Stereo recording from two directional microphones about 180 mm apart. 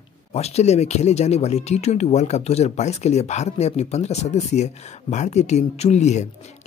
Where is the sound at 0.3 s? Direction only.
35° left (ahead or behind).